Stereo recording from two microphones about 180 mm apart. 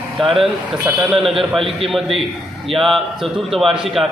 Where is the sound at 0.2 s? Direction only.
30° right (ahead or behind).